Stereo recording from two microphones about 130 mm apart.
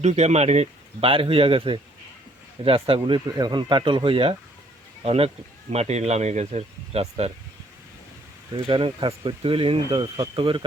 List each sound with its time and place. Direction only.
0.0 s speech: 55° right (ahead or behind)
8.5 s speech: 35° right (ahead or behind)